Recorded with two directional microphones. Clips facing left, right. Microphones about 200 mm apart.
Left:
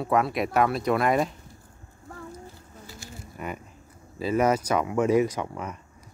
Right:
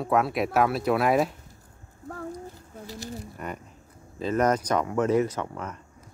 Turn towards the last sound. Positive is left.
turn(degrees=10)  # may be behind; listen again after turning